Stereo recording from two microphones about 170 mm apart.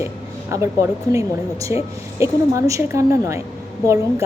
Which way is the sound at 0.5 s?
15° right (ahead or behind).